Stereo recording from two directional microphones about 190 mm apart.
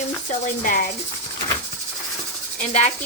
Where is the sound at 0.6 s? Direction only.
45° left (ahead or behind).